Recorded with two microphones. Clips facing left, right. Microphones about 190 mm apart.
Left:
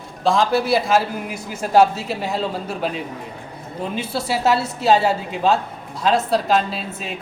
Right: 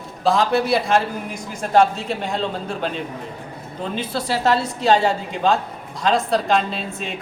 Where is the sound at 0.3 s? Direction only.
Centre (ahead or behind).